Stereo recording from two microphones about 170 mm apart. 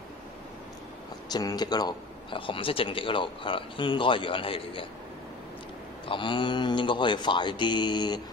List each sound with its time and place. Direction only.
1.3 s speech: 25° left (ahead or behind)
6.0 s speech: 30° left (ahead or behind)